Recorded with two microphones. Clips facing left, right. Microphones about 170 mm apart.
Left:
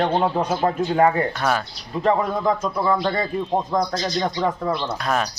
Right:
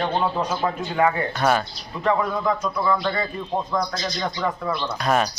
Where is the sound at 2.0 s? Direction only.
35° left (ahead or behind).